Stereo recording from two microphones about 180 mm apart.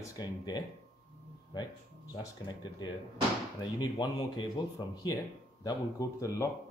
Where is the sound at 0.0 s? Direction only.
20° left (ahead or behind).